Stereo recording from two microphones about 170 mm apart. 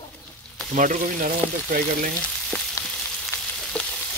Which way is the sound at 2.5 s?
5° left (ahead or behind).